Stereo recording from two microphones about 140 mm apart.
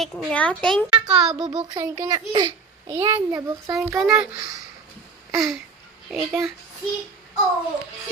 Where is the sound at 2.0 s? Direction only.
30° right (ahead or behind).